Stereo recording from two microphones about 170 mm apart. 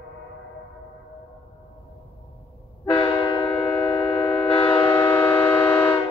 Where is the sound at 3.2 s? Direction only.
30° left (ahead or behind).